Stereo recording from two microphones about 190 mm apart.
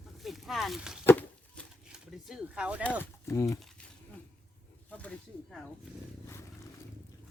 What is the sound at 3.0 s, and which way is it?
Speech, 15° left (ahead or behind).